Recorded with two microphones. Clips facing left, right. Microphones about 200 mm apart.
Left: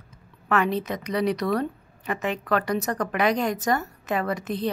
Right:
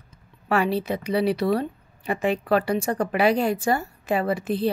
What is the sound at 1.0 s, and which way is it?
Speech, 30° right (ahead or behind).